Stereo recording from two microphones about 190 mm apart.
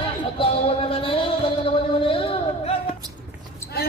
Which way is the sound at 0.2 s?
30° left (ahead or behind).